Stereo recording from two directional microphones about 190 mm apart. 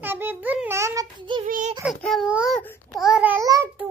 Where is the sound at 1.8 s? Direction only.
Centre (ahead or behind).